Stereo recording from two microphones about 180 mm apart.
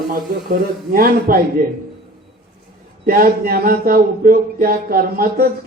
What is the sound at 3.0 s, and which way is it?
Speech, 55° right (ahead or behind).